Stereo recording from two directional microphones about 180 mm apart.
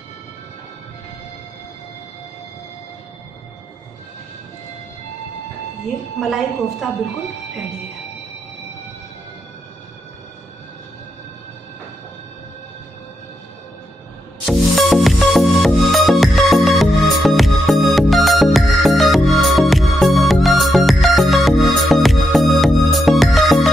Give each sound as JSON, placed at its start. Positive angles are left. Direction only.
{"t": 6.1, "sound": "a woman's voice", "side_deg": 0}
{"t": 14.4, "sound": "music", "side_deg": 0}